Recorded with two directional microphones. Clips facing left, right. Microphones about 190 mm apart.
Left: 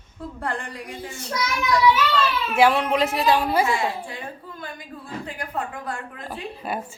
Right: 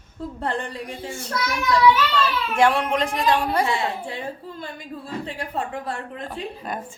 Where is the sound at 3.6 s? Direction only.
25° right (ahead or behind).